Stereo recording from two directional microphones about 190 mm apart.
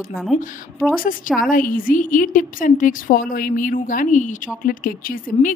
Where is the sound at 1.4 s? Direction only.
45° left (ahead or behind).